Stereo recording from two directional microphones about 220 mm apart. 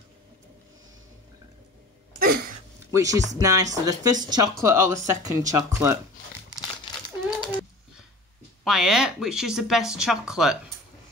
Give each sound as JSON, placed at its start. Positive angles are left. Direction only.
{"t": 2.1, "sound": "a sound", "side_deg": -40}
{"t": 2.9, "sound": "speech", "side_deg": -15}
{"t": 8.6, "sound": "speech", "side_deg": 0}